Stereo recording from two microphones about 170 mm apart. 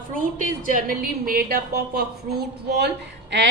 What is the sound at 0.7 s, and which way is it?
A woman's voice, 55° right (ahead or behind).